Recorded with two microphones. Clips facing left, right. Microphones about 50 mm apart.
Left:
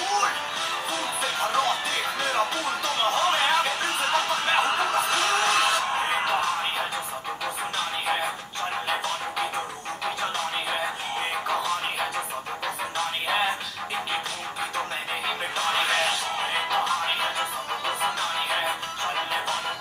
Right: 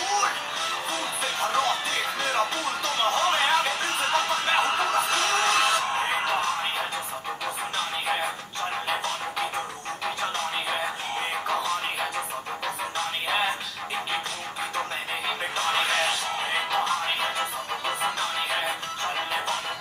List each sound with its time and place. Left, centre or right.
0.0 s music: centre
8.8 s music: centre
15.7 s music: centre